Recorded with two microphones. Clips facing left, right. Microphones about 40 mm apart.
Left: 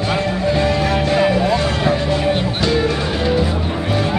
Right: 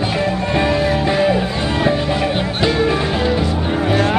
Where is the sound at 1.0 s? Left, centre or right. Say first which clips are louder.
Left 1 dB; centre.